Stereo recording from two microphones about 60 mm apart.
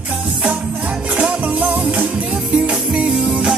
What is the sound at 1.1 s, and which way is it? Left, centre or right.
Music, right.